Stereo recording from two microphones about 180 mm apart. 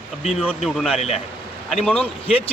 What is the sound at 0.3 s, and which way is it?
A man's voice, centre (ahead or behind).